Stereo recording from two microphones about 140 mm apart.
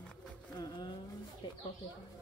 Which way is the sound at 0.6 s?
30° left (ahead or behind).